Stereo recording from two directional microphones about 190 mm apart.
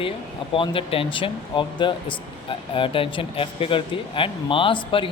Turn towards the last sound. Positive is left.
turn(degrees=25)  # may be behind; listen again after turning